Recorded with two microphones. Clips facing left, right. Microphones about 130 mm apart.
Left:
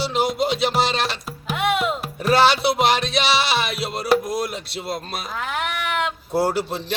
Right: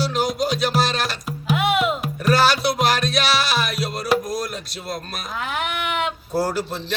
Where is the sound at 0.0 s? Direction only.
25° left (ahead or behind).